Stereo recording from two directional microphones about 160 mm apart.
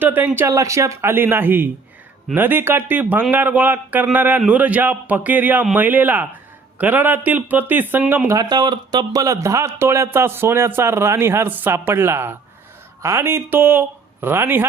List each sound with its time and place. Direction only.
0.0 s a man's voice: 10° right (ahead or behind)
8.4 s speech: 25° right (ahead or behind)